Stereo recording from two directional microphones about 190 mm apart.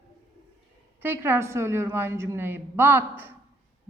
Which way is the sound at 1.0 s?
10° right (ahead or behind).